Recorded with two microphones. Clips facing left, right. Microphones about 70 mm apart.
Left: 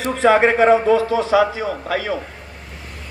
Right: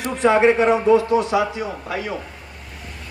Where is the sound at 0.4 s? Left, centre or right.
Left.